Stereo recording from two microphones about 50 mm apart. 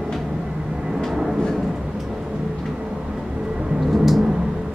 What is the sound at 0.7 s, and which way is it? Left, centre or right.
Vehicle, centre.